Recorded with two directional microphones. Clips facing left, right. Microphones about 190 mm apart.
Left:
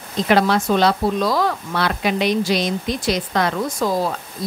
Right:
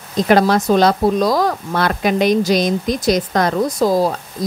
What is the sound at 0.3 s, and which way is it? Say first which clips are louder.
Speech: right 3 dB; 40° right (ahead or behind).